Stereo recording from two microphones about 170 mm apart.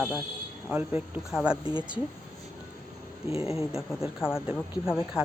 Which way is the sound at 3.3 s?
35° left (ahead or behind).